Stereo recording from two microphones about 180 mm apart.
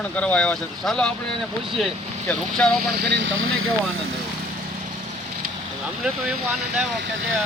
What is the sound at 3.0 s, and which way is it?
Speech, 70° right (ahead or behind).